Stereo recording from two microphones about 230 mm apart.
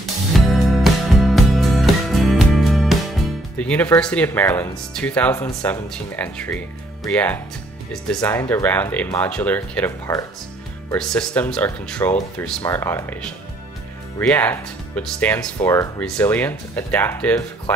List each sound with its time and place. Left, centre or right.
0.0 s music: centre
3.5 s speech: centre
14.2 s speech: centre